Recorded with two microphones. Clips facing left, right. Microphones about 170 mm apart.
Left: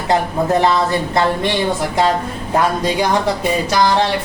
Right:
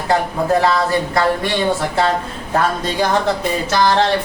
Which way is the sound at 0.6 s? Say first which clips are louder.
Left 1 dB; 20° left (ahead or behind).